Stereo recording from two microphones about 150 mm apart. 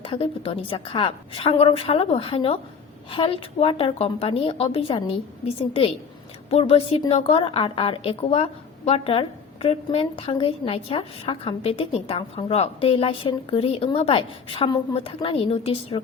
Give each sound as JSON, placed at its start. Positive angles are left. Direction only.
{"t": 0.0, "sound": "a woman's voice", "side_deg": 35}
{"t": 6.5, "sound": "a woman's voice", "side_deg": 40}